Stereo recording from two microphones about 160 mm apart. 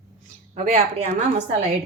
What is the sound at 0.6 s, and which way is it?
Speech, 40° right (ahead or behind).